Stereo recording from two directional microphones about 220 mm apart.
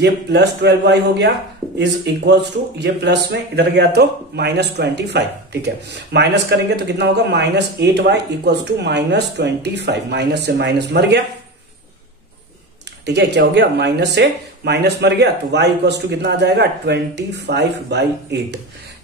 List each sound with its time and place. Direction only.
0.0 s speech: 50° right (ahead or behind)
13.0 s speech: 50° right (ahead or behind)